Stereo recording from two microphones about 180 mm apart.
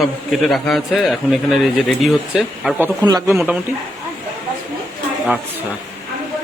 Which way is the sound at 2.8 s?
20° right (ahead or behind).